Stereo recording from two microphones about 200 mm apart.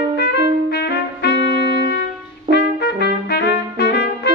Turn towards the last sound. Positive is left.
turn(degrees=55)  # may be behind; listen again after turning